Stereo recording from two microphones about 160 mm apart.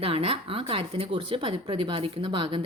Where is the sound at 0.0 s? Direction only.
35° right (ahead or behind).